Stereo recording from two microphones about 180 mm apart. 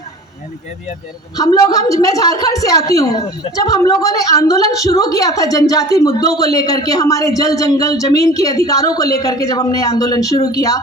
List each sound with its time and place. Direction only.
1.4 s a woman's voice: 20° left (ahead or behind)